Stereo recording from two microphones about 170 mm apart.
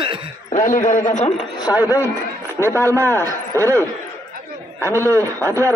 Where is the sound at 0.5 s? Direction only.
50° left (ahead or behind).